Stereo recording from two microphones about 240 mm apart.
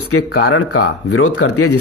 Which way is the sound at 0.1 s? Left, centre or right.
Left.